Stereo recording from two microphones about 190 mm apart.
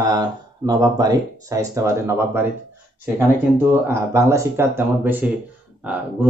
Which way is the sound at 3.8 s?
15° right (ahead or behind).